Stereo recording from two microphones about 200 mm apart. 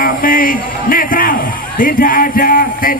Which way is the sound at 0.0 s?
45° left (ahead or behind).